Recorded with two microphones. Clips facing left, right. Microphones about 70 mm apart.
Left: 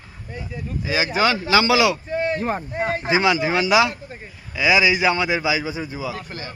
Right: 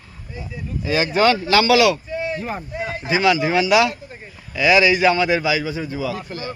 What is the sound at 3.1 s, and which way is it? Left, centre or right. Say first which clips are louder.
Speech: right 3 dB; left.